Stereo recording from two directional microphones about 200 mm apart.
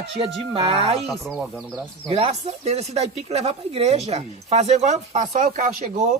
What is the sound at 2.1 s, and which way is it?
Speech, 30° right (ahead or behind).